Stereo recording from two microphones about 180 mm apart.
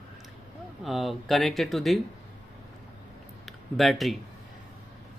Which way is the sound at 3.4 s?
Centre (ahead or behind).